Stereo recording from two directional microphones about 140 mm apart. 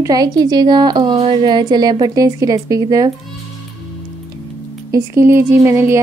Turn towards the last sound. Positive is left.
turn(degrees=-20)  # may be behind; listen again after turning